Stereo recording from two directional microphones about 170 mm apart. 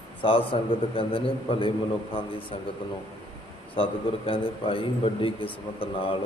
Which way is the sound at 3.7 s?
30° left (ahead or behind).